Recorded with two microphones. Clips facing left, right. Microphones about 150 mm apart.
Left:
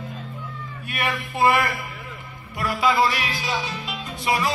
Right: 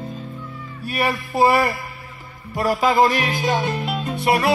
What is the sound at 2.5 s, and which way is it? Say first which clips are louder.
Music: right 4 dB; 40° right (ahead or behind).